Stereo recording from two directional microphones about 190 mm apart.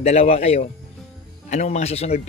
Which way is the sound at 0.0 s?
35° left (ahead or behind).